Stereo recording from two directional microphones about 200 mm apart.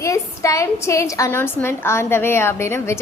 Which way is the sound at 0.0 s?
15° left (ahead or behind).